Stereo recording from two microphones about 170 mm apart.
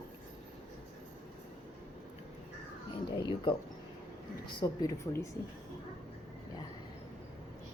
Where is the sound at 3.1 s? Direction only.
30° left (ahead or behind).